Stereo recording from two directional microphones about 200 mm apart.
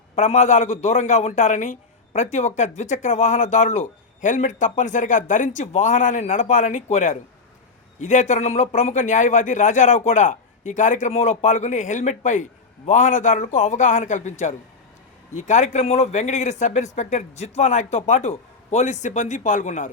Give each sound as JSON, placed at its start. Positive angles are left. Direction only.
{"t": 0.2, "sound": "a man's voice", "side_deg": 35}